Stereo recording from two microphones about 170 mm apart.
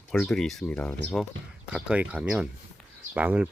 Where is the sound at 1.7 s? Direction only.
5° right (ahead or behind).